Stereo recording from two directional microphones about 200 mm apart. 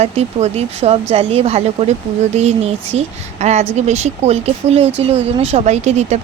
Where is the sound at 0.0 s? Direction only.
35° right (ahead or behind).